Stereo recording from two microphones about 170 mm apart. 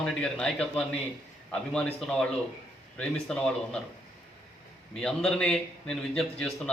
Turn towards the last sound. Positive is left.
turn(degrees=5)  # may be behind; listen again after turning